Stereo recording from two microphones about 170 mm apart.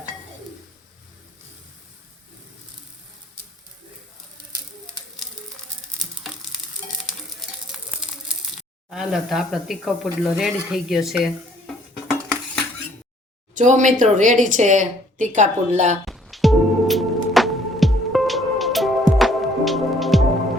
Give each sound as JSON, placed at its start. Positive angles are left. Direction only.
{"t": 6.0, "sound": "a sound", "side_deg": 0}
{"t": 8.9, "sound": "speech", "side_deg": -5}
{"t": 13.6, "sound": "speech", "side_deg": -45}
{"t": 16.0, "sound": "music", "side_deg": 0}